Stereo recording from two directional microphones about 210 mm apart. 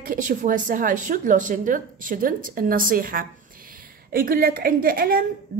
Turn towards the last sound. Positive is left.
turn(degrees=-45)  # may be behind; listen again after turning